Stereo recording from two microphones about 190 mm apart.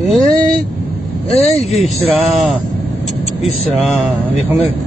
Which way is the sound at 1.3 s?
35° left (ahead or behind).